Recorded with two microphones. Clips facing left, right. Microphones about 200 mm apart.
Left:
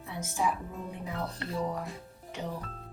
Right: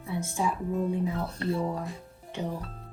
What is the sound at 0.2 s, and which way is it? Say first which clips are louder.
Speech: even; 30° right (ahead or behind).